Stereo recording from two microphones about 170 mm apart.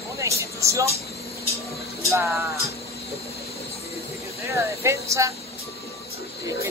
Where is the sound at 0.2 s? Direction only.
20° right (ahead or behind).